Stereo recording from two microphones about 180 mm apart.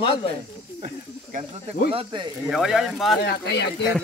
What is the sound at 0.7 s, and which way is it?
Snake, 35° right (ahead or behind).